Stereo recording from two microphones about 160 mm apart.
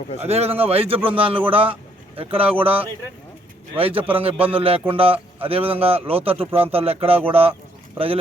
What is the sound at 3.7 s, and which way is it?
A man's voice, 35° right (ahead or behind).